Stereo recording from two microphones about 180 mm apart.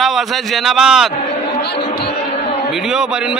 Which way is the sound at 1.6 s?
65° left (ahead or behind).